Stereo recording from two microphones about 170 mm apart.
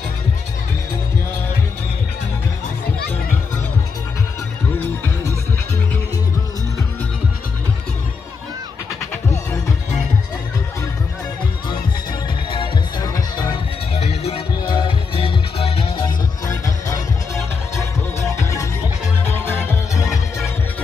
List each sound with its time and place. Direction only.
12.4 s music: 25° left (ahead or behind)
16.4 s music: 20° left (ahead or behind)
18.2 s music: 20° left (ahead or behind)